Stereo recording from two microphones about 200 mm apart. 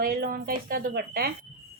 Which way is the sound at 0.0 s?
50° right (ahead or behind).